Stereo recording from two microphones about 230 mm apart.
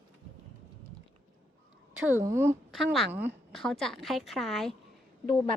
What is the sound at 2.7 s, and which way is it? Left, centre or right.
A woman's voice, centre.